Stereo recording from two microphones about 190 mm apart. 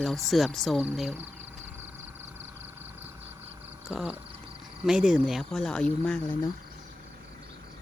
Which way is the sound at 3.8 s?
5° right (ahead or behind).